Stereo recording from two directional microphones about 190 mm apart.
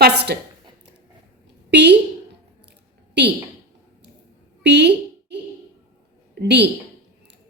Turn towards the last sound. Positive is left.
turn(degrees=-60)  # may be behind; listen again after turning